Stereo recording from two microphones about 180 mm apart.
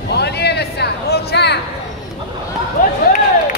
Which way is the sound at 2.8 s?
50° left (ahead or behind).